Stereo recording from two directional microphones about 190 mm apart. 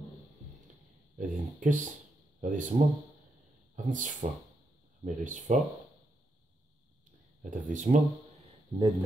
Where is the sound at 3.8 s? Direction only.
45° right (ahead or behind).